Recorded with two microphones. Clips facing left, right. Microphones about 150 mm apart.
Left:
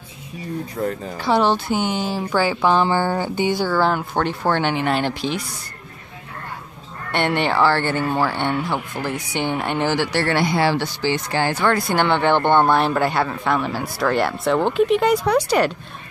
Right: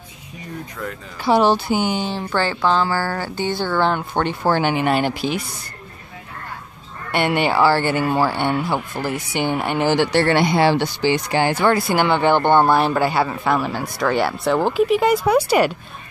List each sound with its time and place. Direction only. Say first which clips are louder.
0.7 s speech: left 9 dB; 35° left (ahead or behind)
1.2 s speech: right 2 dB; 10° right (ahead or behind)
7.1 s speech: right 1 dB; 5° right (ahead or behind)
9.8 s speech: right 6 dB; 20° right (ahead or behind)